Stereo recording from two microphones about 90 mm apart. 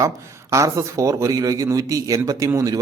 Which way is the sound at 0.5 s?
35° right (ahead or behind).